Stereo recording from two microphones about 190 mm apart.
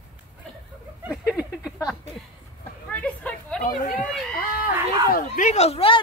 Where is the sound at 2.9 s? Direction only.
5° left (ahead or behind).